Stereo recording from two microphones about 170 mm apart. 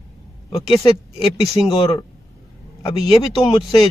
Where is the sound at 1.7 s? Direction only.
30° left (ahead or behind).